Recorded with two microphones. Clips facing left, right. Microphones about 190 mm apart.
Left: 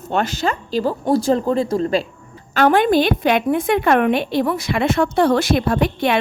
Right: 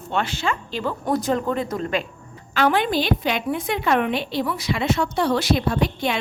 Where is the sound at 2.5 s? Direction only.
50° left (ahead or behind).